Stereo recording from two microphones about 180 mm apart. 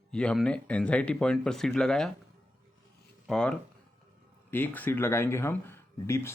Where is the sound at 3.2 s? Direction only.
5° left (ahead or behind).